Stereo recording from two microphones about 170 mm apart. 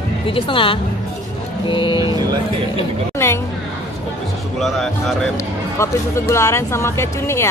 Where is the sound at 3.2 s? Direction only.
15° left (ahead or behind).